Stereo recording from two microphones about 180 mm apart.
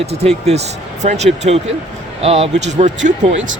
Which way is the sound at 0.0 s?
35° right (ahead or behind).